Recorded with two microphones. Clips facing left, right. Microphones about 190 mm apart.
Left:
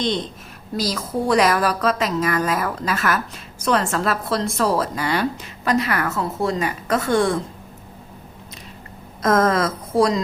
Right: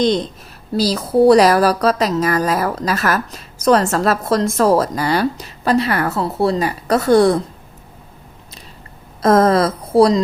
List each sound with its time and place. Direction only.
0.7 s a woman's voice: 30° right (ahead or behind)
9.2 s a woman's voice: 30° right (ahead or behind)